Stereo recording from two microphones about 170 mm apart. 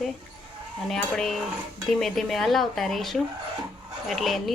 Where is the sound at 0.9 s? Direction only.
5° left (ahead or behind).